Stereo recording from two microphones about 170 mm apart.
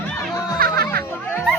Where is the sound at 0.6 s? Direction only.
60° right (ahead or behind).